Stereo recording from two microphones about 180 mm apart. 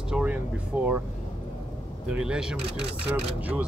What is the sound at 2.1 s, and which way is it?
Speech, 5° right (ahead or behind).